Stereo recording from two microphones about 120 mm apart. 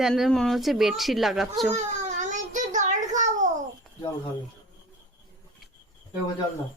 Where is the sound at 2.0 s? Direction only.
85° right.